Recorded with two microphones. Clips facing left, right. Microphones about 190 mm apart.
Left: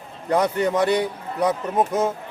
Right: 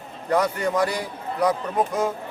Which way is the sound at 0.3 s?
20° left (ahead or behind).